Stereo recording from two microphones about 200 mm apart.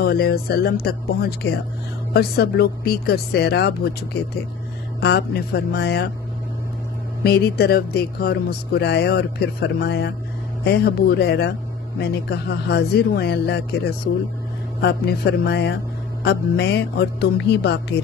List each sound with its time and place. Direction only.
0.0 s speech: 50° left (ahead or behind)
7.2 s speech: 50° left (ahead or behind)